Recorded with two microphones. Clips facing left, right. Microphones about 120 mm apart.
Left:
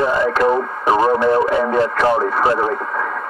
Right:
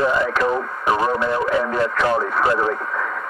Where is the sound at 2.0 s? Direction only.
30° left (ahead or behind).